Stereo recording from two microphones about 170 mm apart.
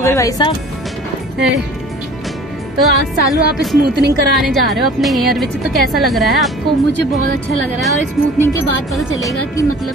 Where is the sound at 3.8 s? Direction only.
75° right (ahead or behind).